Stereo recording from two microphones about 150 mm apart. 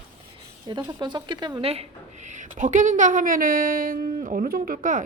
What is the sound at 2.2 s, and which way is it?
Speech, 55° right (ahead or behind).